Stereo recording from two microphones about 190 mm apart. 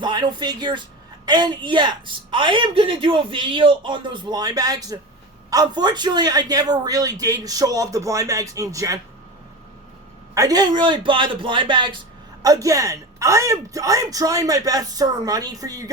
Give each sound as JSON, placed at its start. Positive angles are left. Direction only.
{"t": 0.0, "sound": "a woman's voice", "side_deg": -25}
{"t": 10.3, "sound": "a woman's voice", "side_deg": -20}